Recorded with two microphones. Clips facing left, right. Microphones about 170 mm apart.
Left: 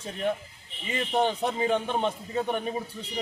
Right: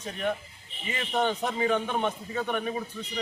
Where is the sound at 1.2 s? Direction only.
30° left (ahead or behind).